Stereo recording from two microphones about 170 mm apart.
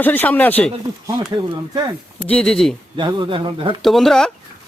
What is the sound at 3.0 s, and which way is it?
Speech, 30° right (ahead or behind).